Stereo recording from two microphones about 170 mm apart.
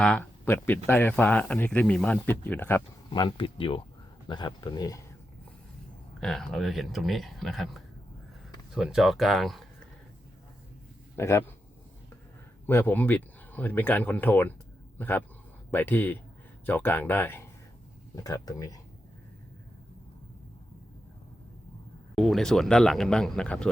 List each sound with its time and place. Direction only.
0.0 s speech: 10° left (ahead or behind)
3.1 s speech: 30° left (ahead or behind)
6.1 s speech: centre (ahead or behind)
11.2 s speech: 15° left (ahead or behind)
12.6 s speech: 10° left (ahead or behind)
22.1 s speech: centre (ahead or behind)